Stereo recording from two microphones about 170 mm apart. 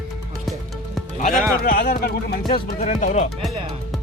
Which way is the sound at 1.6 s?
60° left (ahead or behind).